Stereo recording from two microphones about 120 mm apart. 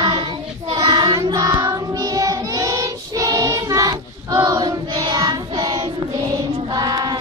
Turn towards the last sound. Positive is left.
turn(degrees=-35)  # may be behind; listen again after turning